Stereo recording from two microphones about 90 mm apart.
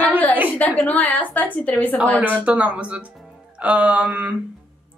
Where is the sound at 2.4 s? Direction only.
15° right (ahead or behind).